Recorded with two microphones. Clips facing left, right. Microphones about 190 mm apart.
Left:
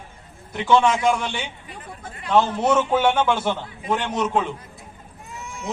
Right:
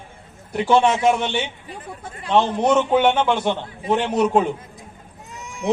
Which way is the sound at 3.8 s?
30° right (ahead or behind).